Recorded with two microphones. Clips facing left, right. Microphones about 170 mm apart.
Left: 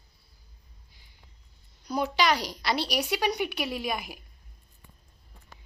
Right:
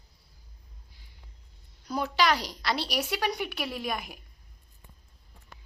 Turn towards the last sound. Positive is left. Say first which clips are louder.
# left 2 dB
turn(degrees=5)  # may be behind; listen again after turning